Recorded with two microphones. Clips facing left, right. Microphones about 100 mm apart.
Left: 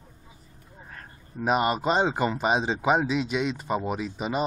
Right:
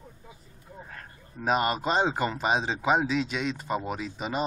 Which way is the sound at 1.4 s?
5° left (ahead or behind).